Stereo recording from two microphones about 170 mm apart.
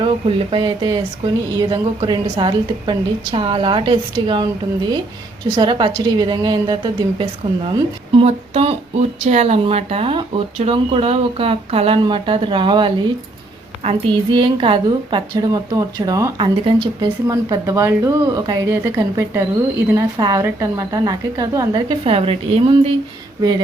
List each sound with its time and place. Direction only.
0.0 s speech: 30° right (ahead or behind)
5.5 s speech: 30° right (ahead or behind)